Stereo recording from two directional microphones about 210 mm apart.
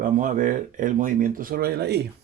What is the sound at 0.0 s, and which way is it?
Speech, 40° right (ahead or behind).